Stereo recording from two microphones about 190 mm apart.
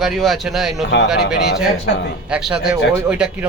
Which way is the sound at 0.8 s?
65° left (ahead or behind).